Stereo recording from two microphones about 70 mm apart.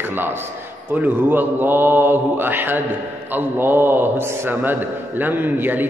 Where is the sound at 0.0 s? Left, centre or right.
Right.